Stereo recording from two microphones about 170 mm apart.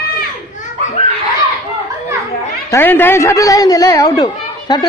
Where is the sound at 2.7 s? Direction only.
15° left (ahead or behind).